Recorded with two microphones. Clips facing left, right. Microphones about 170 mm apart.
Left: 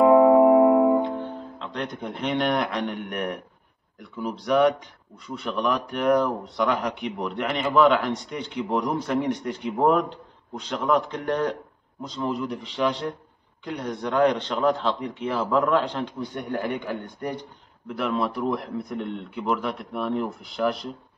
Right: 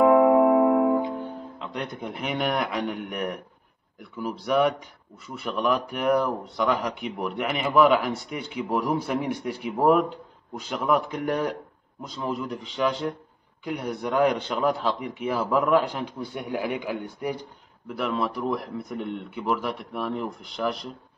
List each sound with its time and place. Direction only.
0.0 s music: 20° left (ahead or behind)
1.0 s a man's voice: 10° right (ahead or behind)